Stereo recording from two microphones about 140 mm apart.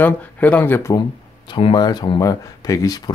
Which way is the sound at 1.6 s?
35° left (ahead or behind).